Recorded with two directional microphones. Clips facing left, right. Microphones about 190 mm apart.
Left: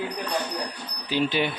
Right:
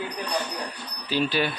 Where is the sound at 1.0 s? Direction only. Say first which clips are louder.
Even; 20° left (ahead or behind).